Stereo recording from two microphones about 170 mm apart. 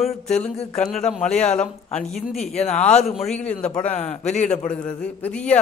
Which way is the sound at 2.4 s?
40° left (ahead or behind).